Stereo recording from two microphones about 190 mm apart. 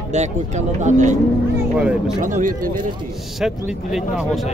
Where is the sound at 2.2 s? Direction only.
45° right (ahead or behind).